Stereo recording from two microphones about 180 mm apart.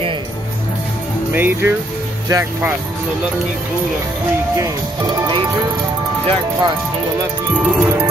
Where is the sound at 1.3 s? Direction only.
10° right (ahead or behind).